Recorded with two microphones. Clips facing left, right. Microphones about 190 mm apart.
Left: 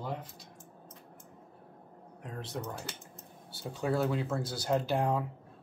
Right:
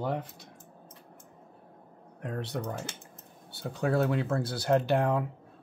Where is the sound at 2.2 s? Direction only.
65° right (ahead or behind).